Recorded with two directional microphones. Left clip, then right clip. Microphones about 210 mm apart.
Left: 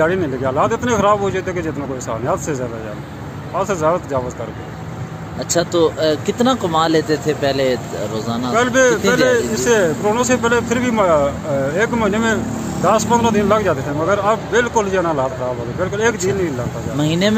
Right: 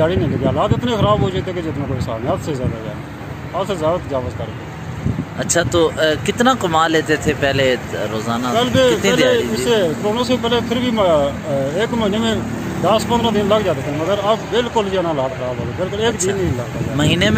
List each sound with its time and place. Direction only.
0.0 s speech: centre (ahead or behind)
3.5 s speech: centre (ahead or behind)
5.5 s speech: 5° left (ahead or behind)